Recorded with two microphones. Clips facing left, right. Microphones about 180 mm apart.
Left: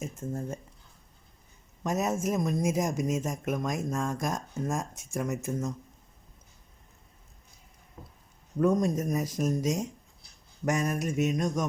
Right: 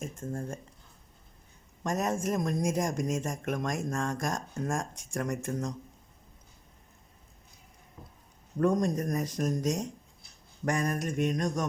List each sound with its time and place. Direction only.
0.0 s speech: 5° left (ahead or behind)
1.8 s speech: 5° left (ahead or behind)
8.0 s a sound: 45° left (ahead or behind)
8.5 s speech: 5° left (ahead or behind)
10.7 s mantra: 5° left (ahead or behind)